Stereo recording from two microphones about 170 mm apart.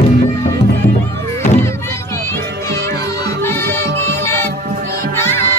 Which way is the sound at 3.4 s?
15° left (ahead or behind).